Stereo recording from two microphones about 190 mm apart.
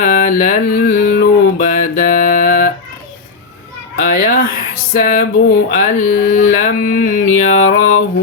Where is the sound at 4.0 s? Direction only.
55° left (ahead or behind).